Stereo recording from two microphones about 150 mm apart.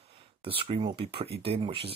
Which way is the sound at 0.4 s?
35° right (ahead or behind).